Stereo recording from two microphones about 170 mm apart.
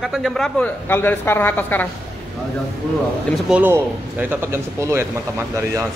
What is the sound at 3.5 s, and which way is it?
Speech, 10° right (ahead or behind).